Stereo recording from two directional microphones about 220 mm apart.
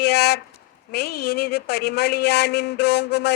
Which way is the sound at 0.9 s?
50° left (ahead or behind).